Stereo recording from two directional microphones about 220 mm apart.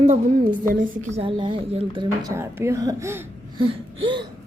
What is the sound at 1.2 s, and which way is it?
A woman's voice, 20° right (ahead or behind).